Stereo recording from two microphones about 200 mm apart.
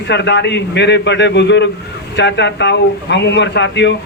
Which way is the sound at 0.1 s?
60° left (ahead or behind).